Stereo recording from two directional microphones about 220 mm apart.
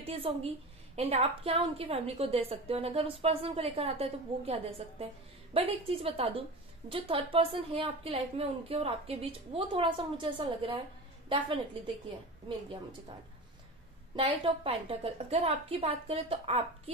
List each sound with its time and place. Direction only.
0.0 s a woman's voice: 25° right (ahead or behind)
14.1 s a woman's voice: 25° right (ahead or behind)